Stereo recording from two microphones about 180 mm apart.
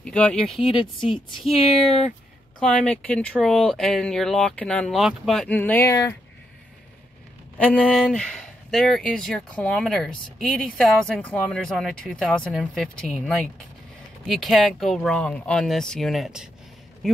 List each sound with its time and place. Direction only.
0.0 s speech: 5° left (ahead or behind)
0.6 s speech: 30° left (ahead or behind)
1.4 s speech: centre (ahead or behind); by 6.1 s 15° left (ahead or behind)
7.5 s speech: 5° left (ahead or behind)